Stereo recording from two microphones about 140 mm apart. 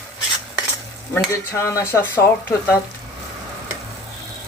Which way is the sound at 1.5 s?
20° left (ahead or behind).